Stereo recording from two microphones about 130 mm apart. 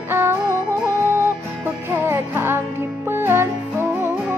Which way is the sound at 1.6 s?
20° right (ahead or behind).